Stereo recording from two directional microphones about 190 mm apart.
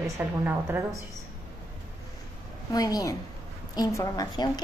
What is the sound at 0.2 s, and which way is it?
Speech, 10° right (ahead or behind).